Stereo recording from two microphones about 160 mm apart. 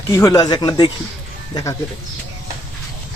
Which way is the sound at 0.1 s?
20° left (ahead or behind).